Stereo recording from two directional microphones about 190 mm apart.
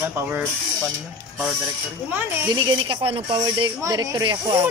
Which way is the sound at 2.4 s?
25° right (ahead or behind).